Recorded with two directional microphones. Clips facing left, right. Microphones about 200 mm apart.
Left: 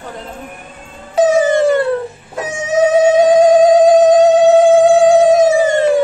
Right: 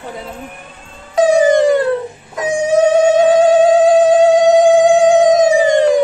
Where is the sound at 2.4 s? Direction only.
10° right (ahead or behind).